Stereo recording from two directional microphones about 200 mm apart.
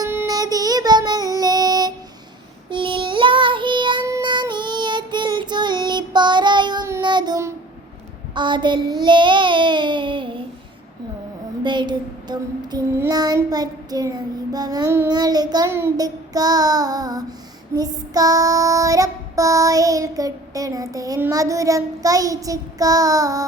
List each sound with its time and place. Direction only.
0.0 s child singing: 15° right (ahead or behind)
11.6 s child singing: 25° right (ahead or behind)